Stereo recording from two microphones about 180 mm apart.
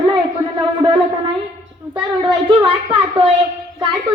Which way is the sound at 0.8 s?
25° right (ahead or behind).